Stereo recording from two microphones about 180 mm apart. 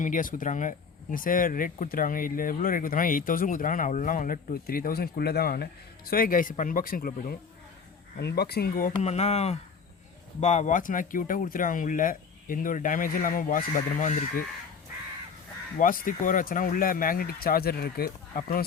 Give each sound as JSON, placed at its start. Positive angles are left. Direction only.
{"t": 0.0, "sound": "speech", "side_deg": 50}
{"t": 9.0, "sound": "speech", "side_deg": 40}
{"t": 15.8, "sound": "speech", "side_deg": 50}